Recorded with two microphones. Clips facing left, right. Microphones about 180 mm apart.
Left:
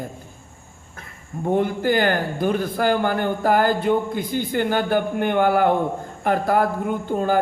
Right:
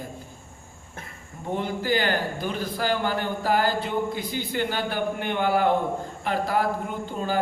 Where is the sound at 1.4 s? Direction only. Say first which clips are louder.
Left 7 dB; 50° left (ahead or behind).